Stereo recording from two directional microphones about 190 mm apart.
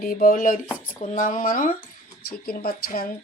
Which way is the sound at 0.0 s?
50° left (ahead or behind).